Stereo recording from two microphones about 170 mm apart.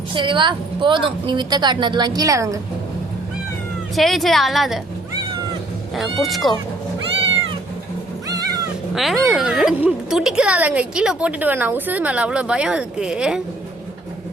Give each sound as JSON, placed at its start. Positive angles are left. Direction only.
{"t": 0.1, "sound": "a woman's voice", "side_deg": -30}
{"t": 3.9, "sound": "speech", "side_deg": 0}
{"t": 5.9, "sound": "speech", "side_deg": 0}
{"t": 8.3, "sound": "cat", "side_deg": -20}
{"t": 9.0, "sound": "speech", "side_deg": 0}